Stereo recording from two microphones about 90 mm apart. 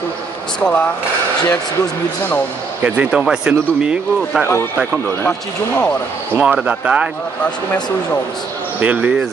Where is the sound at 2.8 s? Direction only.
20° right (ahead or behind).